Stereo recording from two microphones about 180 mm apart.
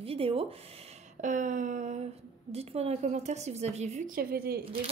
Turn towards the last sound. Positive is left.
turn(degrees=-55)  # may be behind; listen again after turning